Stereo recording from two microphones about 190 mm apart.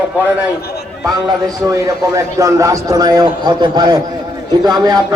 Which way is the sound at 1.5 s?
20° right (ahead or behind).